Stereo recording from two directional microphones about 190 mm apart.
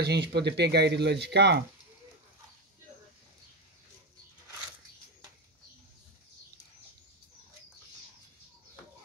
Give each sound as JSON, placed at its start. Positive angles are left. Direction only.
{"t": 0.0, "sound": "speech", "side_deg": -60}